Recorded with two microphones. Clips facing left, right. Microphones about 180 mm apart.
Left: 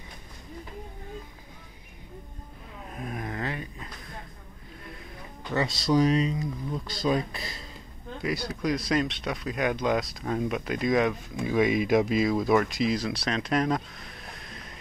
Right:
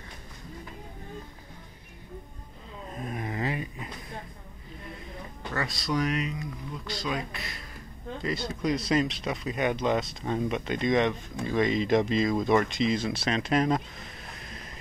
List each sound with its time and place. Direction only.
3.0 s a sound: centre (ahead or behind)
5.5 s speech: 25° left (ahead or behind)
8.5 s speech: centre (ahead or behind)